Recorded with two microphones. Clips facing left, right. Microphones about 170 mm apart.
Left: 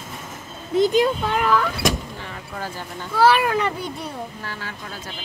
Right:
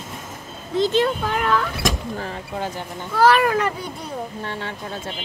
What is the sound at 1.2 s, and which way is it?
Speech, centre (ahead or behind).